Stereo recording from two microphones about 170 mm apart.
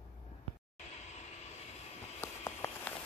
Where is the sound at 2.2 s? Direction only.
15° left (ahead or behind).